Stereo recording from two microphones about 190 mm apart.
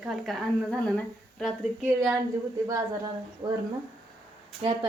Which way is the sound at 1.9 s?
10° right (ahead or behind).